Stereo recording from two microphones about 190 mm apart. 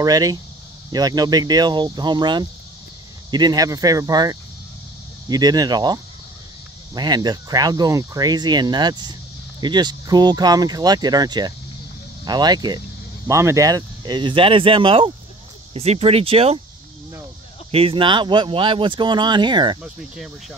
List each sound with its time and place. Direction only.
0.0 s speech: 20° right (ahead or behind)
17.6 s speech: 30° right (ahead or behind)
19.8 s speech: 5° right (ahead or behind)